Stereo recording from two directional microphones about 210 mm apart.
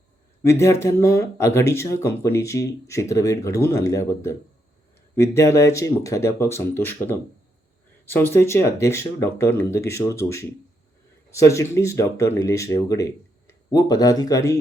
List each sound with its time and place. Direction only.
0.6 s speech: 15° left (ahead or behind)